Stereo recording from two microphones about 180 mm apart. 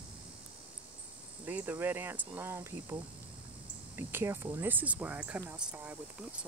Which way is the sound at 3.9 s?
15° right (ahead or behind).